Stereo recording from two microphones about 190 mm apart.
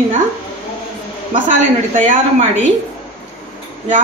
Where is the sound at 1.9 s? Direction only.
40° right (ahead or behind).